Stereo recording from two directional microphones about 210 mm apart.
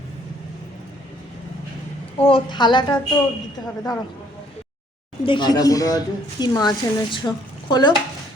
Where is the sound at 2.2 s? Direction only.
25° left (ahead or behind).